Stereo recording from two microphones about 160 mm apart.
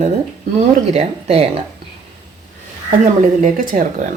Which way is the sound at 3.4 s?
55° right (ahead or behind).